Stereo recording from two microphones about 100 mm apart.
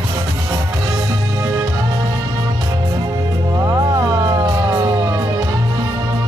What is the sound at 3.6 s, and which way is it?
Music, 35° right (ahead or behind).